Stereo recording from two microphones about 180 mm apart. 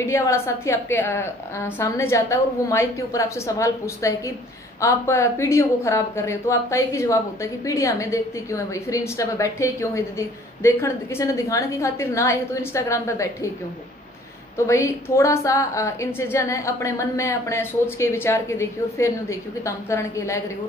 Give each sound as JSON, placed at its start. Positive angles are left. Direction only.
{"t": 0.0, "sound": "a woman's voice", "side_deg": 15}
{"t": 14.7, "sound": "a woman's voice", "side_deg": 15}